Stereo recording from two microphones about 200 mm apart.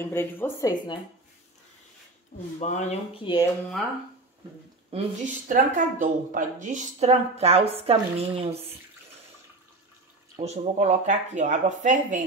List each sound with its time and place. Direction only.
0.0 s speech: 10° left (ahead or behind)
2.6 s speech: 35° left (ahead or behind)
4.9 s speech: 40° right (ahead or behind)
10.3 s speech: 30° right (ahead or behind)